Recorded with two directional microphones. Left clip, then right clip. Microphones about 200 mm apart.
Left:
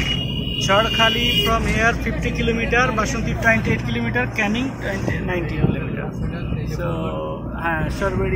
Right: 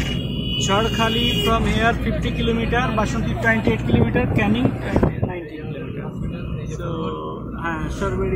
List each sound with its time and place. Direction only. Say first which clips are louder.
0.6 s speech: left 3 dB; centre (ahead or behind)
1.4 s speech: left 1 dB; 10° right (ahead or behind)
3.4 s speech: left 1 dB; 5° right (ahead or behind)
7.6 s speech: left 3 dB; centre (ahead or behind)